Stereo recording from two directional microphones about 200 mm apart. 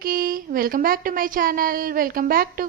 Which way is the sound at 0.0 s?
45° right (ahead or behind).